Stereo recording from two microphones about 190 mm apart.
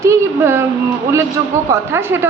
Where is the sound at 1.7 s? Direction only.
15° right (ahead or behind).